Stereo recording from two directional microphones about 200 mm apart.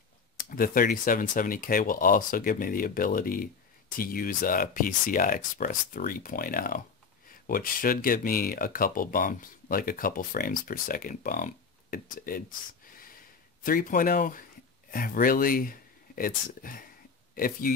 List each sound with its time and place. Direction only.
0.4 s speech: 45° left (ahead or behind)